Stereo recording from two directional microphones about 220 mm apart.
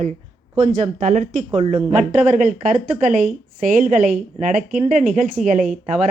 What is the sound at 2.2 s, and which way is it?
A woman's voice, 35° right (ahead or behind).